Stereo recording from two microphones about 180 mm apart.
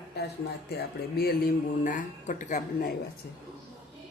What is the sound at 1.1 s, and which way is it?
Speech, 55° left (ahead or behind).